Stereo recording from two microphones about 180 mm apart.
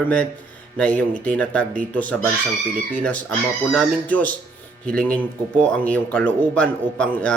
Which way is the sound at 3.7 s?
10° left (ahead or behind).